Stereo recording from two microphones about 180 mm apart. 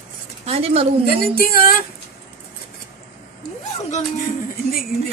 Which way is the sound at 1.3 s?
55° left (ahead or behind).